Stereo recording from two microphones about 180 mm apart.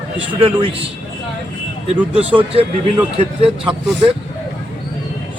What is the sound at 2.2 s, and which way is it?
Speech, 10° right (ahead or behind).